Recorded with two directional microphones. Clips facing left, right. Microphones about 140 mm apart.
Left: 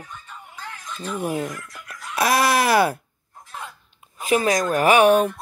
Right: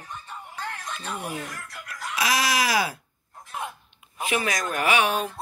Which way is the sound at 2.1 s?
55° left (ahead or behind).